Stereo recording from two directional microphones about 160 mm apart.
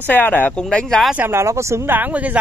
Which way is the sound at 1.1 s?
15° right (ahead or behind).